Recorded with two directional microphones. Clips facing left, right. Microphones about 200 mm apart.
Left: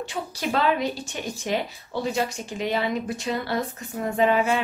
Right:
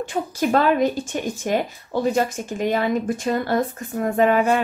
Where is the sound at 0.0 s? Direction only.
50° right (ahead or behind).